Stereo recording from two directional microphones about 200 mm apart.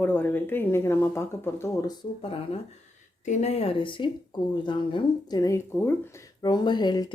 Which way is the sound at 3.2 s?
35° left (ahead or behind).